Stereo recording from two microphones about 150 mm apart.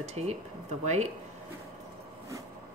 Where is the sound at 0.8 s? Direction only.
50° right (ahead or behind).